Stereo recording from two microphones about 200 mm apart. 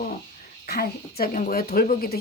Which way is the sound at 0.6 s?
50° left (ahead or behind).